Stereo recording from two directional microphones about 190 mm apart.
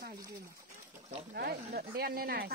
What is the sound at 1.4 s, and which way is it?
Speech, 55° right (ahead or behind).